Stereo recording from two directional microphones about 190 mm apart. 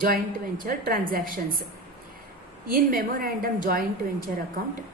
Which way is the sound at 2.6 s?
50° right (ahead or behind).